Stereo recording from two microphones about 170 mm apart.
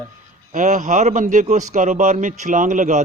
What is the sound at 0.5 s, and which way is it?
A man's voice, 50° right (ahead or behind).